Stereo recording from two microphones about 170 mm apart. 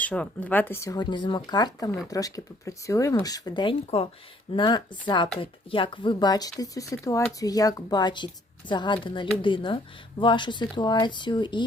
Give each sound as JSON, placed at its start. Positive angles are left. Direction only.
{"t": 0.0, "sound": "a woman's voice", "side_deg": 10}